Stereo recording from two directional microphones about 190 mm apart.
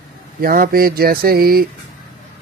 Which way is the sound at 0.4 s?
50° right (ahead or behind).